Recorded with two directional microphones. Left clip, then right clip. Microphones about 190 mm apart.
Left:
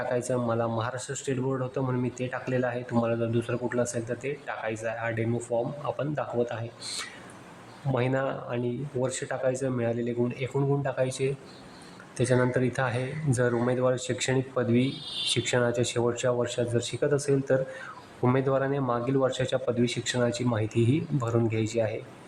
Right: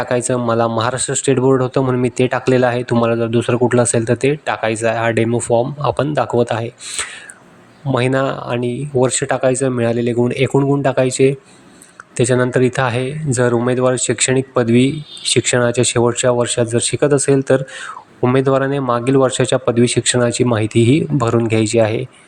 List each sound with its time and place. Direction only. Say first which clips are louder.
0.1 s speech: right 12 dB; 35° right (ahead or behind)